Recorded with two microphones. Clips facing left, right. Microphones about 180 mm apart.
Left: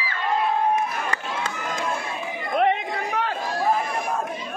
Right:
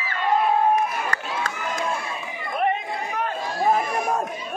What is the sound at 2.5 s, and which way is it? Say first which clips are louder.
Chatter: left 3 dB; 85° left.